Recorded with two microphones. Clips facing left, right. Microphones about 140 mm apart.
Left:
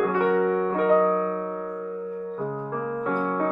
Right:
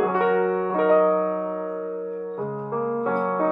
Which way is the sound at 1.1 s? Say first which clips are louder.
Right 3 dB; 10° right (ahead or behind).